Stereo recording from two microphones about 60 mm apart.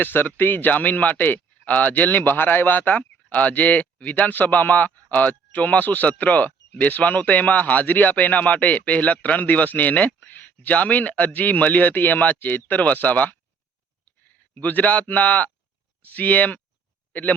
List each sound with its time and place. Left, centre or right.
0.0 s a man's voice: left